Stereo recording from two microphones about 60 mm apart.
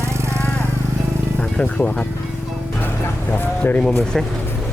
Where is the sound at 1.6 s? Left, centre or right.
Centre.